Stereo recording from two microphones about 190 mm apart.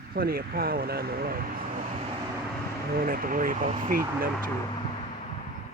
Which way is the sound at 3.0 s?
50° right (ahead or behind).